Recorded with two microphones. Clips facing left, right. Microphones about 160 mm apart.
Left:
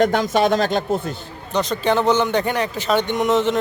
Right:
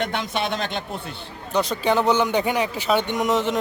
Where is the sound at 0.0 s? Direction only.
40° left (ahead or behind).